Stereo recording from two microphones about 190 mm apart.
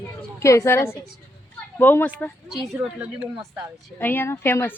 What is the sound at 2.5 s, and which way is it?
Speech, 5° right (ahead or behind).